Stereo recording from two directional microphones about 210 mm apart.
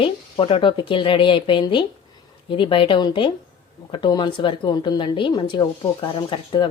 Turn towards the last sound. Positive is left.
turn(degrees=20)  # may be behind; listen again after turning